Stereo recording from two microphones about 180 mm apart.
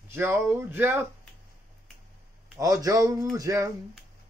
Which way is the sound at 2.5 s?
20° right (ahead or behind).